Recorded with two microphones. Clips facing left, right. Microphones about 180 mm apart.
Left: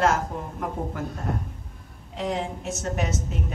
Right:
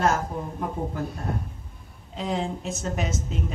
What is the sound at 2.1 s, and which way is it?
A woman's voice, 70° left (ahead or behind).